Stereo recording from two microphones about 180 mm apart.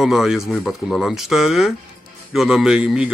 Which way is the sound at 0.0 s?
Centre (ahead or behind).